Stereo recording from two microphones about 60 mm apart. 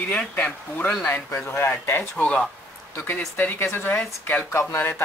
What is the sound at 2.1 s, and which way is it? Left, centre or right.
Speech, centre.